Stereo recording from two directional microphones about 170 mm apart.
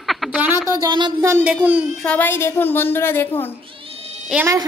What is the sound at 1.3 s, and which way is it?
Speech, 10° right (ahead or behind).